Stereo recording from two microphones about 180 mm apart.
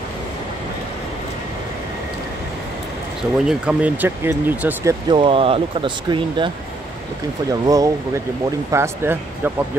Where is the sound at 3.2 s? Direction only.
5° right (ahead or behind).